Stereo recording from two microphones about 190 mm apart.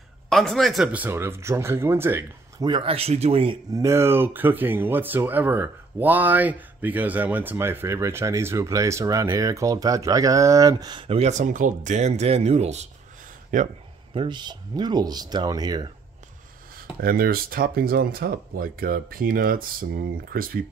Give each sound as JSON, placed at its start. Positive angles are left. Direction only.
{"t": 0.3, "sound": "speech", "side_deg": 0}
{"t": 2.7, "sound": "speech", "side_deg": -30}
{"t": 3.7, "sound": "a man's voice", "side_deg": -15}
{"t": 14.1, "sound": "speech", "side_deg": -25}
{"t": 17.0, "sound": "speech", "side_deg": -50}